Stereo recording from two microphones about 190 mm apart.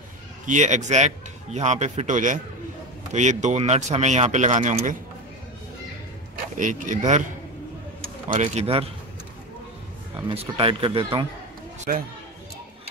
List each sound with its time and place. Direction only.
0.5 s speech: 40° right (ahead or behind)
6.5 s speech: 40° right (ahead or behind)
8.3 s speech: 35° right (ahead or behind)
10.2 s speech: 30° right (ahead or behind)
11.9 s speech: 50° right (ahead or behind)